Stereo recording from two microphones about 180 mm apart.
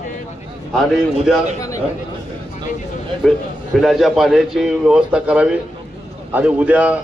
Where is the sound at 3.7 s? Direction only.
Centre (ahead or behind).